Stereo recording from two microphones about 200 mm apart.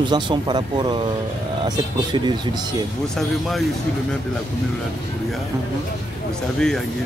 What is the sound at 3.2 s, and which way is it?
Speech, centre (ahead or behind).